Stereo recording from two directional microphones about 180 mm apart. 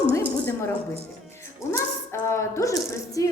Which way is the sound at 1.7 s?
15° left (ahead or behind).